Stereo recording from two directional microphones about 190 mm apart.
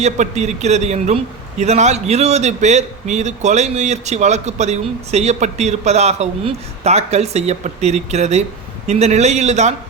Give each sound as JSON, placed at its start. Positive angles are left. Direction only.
{"t": 0.0, "sound": "a man's voice", "side_deg": -35}